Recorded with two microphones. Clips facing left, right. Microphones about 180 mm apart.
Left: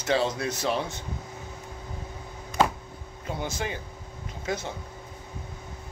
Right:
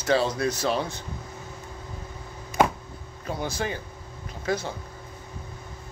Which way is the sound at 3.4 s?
20° left (ahead or behind).